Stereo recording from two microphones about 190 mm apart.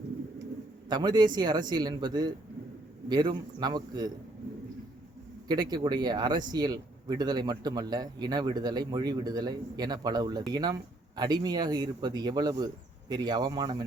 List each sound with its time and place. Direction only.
0.9 s a man's voice: 20° right (ahead or behind)
5.5 s a man's voice: 20° right (ahead or behind)